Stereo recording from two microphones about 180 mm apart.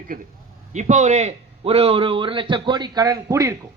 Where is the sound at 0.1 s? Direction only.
50° right (ahead or behind); by 3.5 s 20° right (ahead or behind).